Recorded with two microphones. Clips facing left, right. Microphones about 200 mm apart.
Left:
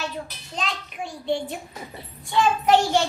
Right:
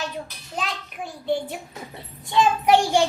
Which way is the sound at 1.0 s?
5° right (ahead or behind).